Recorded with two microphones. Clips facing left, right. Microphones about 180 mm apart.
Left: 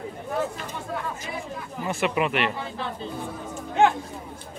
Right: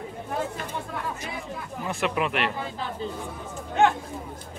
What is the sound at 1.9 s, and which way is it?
Speech, centre (ahead or behind).